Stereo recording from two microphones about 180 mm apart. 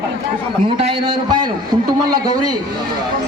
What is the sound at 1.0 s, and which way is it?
Speech, 30° right (ahead or behind).